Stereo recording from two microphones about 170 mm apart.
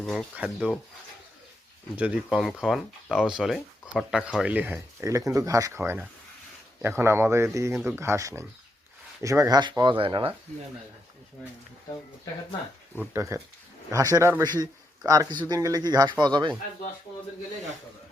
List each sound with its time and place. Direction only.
0.0 s speech: 5° left (ahead or behind)
2.0 s speech: 5° right (ahead or behind); by 10.3 s 30° right (ahead or behind)
13.0 s speech: 15° right (ahead or behind)